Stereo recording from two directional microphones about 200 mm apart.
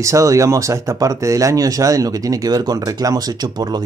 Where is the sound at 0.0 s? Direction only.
15° right (ahead or behind).